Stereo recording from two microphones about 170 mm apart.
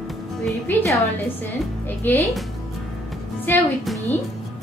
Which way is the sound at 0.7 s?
15° left (ahead or behind).